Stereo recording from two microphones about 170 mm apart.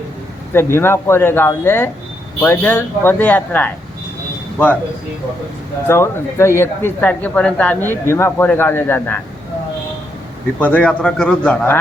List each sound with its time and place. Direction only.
0.5 s speech: 15° left (ahead or behind)
5.9 s speech: 15° left (ahead or behind)
10.6 s speech: 10° left (ahead or behind)